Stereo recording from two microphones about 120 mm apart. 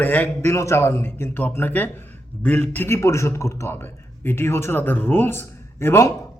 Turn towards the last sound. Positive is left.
turn(degrees=20)  # may be behind; listen again after turning